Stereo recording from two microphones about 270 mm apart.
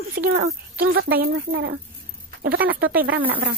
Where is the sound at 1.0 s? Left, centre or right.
Right.